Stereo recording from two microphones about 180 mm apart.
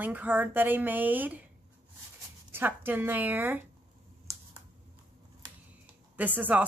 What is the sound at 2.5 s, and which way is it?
A woman's voice, 10° right (ahead or behind).